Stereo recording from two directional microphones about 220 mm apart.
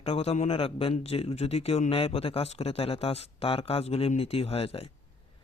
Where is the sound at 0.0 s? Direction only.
25° left (ahead or behind).